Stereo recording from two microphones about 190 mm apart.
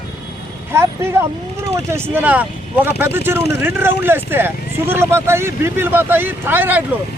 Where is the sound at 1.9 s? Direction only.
10° right (ahead or behind).